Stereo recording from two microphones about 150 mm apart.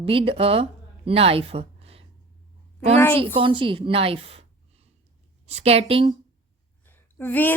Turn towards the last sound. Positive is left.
turn(degrees=15)  # may be behind; listen again after turning